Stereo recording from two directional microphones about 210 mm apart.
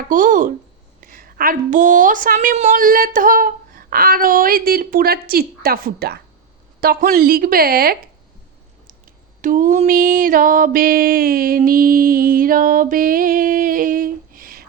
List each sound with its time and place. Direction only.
0.0 s mantra: 40° right (ahead or behind)
1.0 s a woman's voice: 45° right (ahead or behind)
9.4 s mantra: 40° right (ahead or behind)